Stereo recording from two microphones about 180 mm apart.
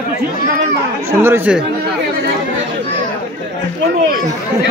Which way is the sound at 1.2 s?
10° right (ahead or behind).